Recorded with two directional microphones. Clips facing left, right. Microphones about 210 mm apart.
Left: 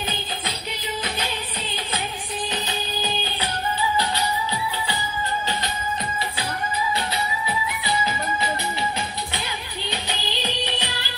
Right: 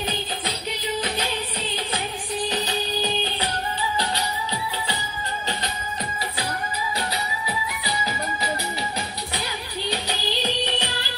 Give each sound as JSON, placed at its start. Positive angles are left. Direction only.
{"t": 2.5, "sound": "music", "side_deg": -40}
{"t": 7.4, "sound": "music", "side_deg": -35}
{"t": 9.8, "sound": "music", "side_deg": -40}